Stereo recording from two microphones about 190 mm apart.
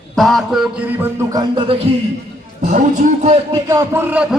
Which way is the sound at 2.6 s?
40° right (ahead or behind).